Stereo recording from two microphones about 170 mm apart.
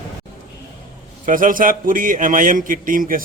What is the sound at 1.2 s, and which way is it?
A man's voice, 55° right (ahead or behind).